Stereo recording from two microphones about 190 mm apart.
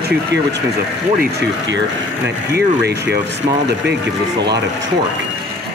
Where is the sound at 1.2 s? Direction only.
70° right (ahead or behind).